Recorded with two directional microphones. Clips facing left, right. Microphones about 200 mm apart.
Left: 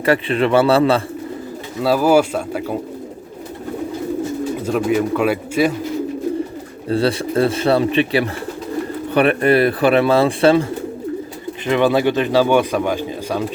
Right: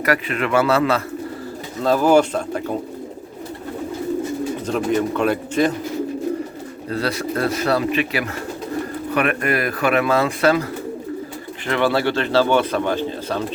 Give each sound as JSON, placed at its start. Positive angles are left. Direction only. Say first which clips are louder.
{"t": 0.0, "sound": "speech", "louder": "left 5 dB", "side_deg": 30}
{"t": 1.8, "sound": "speech", "louder": "left 1 dB", "side_deg": 10}
{"t": 4.6, "sound": "speech", "louder": "left 3 dB", "side_deg": 5}
{"t": 6.8, "sound": "speech", "louder": "left 5 dB", "side_deg": 30}
{"t": 11.6, "sound": "speech", "louder": "left 4 dB", "side_deg": 15}